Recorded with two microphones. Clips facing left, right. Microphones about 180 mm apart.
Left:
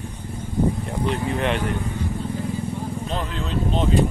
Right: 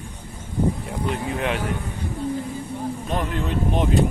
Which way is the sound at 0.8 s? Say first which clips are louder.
Left 2 dB; 5° right (ahead or behind).